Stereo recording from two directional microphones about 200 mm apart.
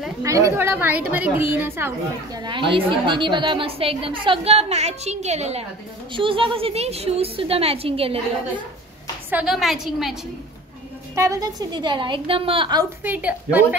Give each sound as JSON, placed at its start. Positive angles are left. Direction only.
{"t": 0.2, "sound": "a woman's voice", "side_deg": -15}
{"t": 9.3, "sound": "a woman's voice", "side_deg": -5}
{"t": 11.1, "sound": "a woman's voice", "side_deg": -15}
{"t": 13.0, "sound": "a woman's voice", "side_deg": -10}